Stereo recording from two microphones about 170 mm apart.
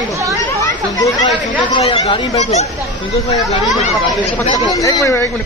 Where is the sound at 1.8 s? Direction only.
35° left (ahead or behind).